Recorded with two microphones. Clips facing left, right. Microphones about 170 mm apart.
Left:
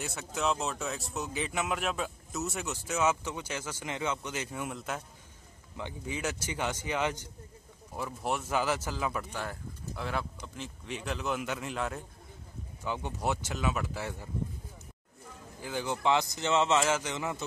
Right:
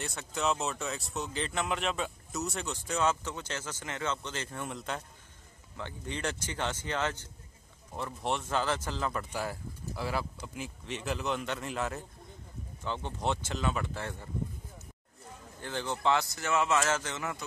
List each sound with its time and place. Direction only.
0.0 s speech: 5° left (ahead or behind)
9.3 s speech: 5° right (ahead or behind)
12.8 s speech: 10° left (ahead or behind)
15.6 s speech: 10° left (ahead or behind)